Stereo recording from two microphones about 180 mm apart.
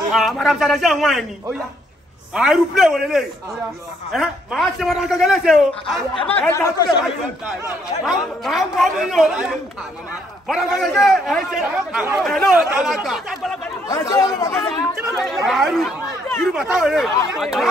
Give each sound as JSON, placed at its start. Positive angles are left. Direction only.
{"t": 0.1, "sound": "a man's voice", "side_deg": 0}
{"t": 2.3, "sound": "a man's voice", "side_deg": -5}
{"t": 6.2, "sound": "speech", "side_deg": 10}
{"t": 8.0, "sound": "a man's voice", "side_deg": 0}
{"t": 13.8, "sound": "speech", "side_deg": 20}
{"t": 15.1, "sound": "a man's voice", "side_deg": 0}